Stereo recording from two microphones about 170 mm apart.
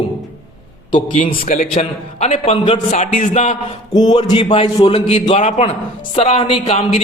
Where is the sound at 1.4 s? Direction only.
55° left (ahead or behind).